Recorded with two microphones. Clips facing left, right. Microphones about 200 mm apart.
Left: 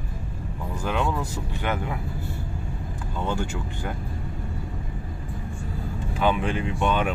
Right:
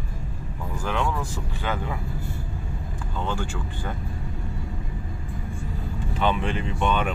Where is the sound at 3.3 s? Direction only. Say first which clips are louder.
Left 3 dB; 20° left (ahead or behind).